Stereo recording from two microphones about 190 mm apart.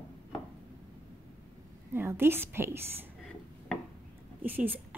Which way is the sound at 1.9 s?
10° right (ahead or behind).